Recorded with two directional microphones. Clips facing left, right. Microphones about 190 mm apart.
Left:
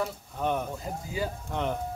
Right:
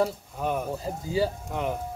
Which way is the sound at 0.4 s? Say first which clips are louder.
Right 1 dB; 5° right (ahead or behind).